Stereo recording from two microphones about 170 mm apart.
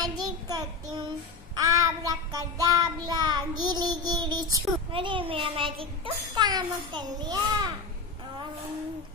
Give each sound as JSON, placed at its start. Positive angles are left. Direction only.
{"t": 0.0, "sound": "child singing", "side_deg": -20}
{"t": 4.9, "sound": "a child's voice", "side_deg": -30}